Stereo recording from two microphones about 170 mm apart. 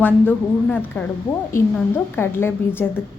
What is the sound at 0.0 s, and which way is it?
A woman's voice, 10° left (ahead or behind).